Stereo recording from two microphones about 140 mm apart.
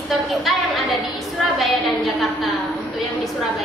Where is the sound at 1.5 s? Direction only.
Centre (ahead or behind).